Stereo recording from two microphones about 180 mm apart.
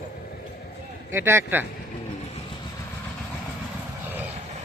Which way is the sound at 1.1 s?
15° right (ahead or behind).